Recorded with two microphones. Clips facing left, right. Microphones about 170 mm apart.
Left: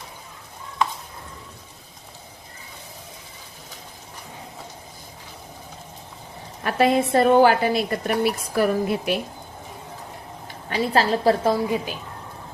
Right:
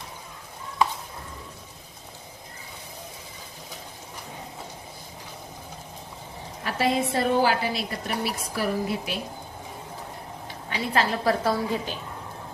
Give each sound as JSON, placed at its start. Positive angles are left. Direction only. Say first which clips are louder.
{"t": 6.7, "sound": "a woman's voice", "louder": "left 6 dB", "side_deg": 55}
{"t": 10.7, "sound": "a woman's voice", "louder": "left 5 dB", "side_deg": 35}
{"t": 11.4, "sound": "a woman's voice", "louder": "left 4 dB", "side_deg": 15}